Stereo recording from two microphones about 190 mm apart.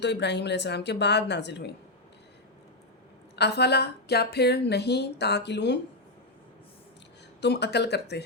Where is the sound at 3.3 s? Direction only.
60° left (ahead or behind).